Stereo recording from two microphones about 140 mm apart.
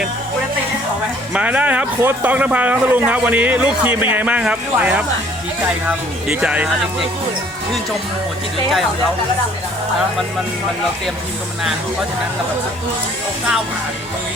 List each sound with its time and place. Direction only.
1.3 s speech: 10° right (ahead or behind)